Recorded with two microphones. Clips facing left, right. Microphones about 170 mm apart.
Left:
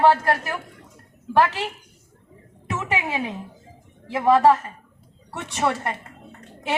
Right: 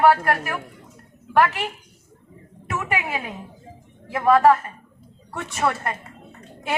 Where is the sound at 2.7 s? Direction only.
20° left (ahead or behind).